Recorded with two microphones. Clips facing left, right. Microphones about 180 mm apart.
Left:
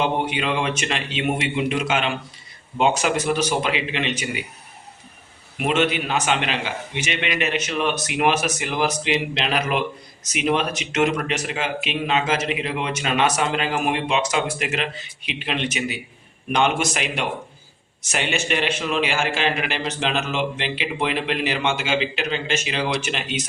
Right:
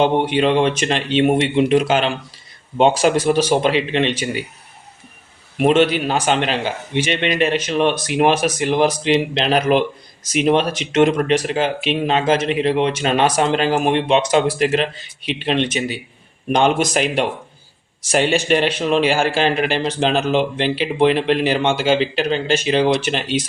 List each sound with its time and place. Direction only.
0.3 s speech: 35° right (ahead or behind)
5.5 s speech: 35° right (ahead or behind)